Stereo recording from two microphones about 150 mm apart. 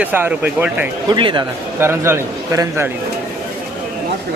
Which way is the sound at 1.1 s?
30° right (ahead or behind).